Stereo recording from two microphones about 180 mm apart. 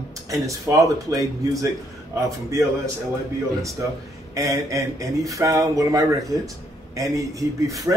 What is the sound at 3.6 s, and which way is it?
A man's voice, 15° right (ahead or behind).